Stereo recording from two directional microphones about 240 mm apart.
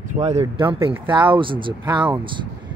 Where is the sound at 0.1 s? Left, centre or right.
Right.